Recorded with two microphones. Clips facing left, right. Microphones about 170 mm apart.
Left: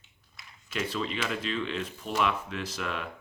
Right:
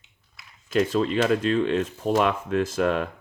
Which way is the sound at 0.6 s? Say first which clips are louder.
Right 10 dB; 45° right (ahead or behind).